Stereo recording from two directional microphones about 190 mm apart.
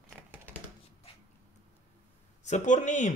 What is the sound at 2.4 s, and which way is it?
Speech, 40° left (ahead or behind).